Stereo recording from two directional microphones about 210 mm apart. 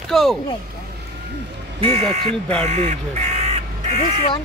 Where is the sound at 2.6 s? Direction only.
35° right (ahead or behind).